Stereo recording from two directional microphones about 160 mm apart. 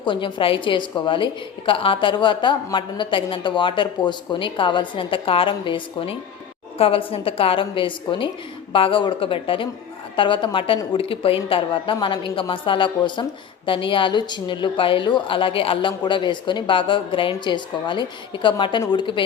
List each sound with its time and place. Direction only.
0.0 s a woman's voice: 30° left (ahead or behind)